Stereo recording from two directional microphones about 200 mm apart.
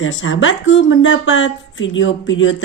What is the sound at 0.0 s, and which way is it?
Speech, 75° left (ahead or behind).